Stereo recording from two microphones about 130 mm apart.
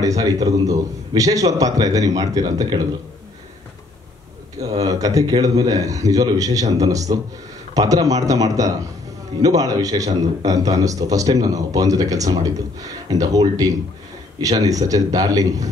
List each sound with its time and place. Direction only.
0.2 s a man's voice: 25° right (ahead or behind)
4.6 s a man's voice: 30° right (ahead or behind)